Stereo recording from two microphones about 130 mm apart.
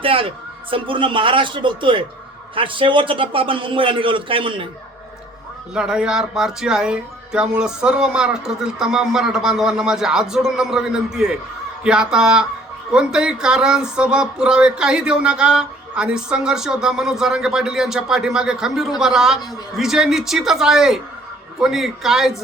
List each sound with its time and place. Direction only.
0.0 s a man's voice: 45° right (ahead or behind)
5.7 s speech: 5° right (ahead or behind)